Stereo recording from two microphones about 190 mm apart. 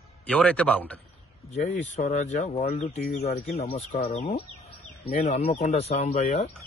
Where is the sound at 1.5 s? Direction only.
40° left (ahead or behind).